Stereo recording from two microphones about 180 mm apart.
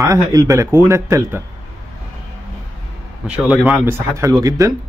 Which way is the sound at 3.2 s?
5° right (ahead or behind).